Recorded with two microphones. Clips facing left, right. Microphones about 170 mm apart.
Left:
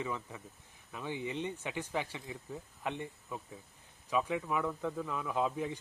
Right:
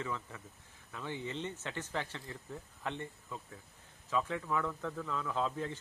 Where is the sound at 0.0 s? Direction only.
15° left (ahead or behind).